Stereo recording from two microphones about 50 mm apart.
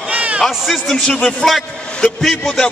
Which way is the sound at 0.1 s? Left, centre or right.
Right.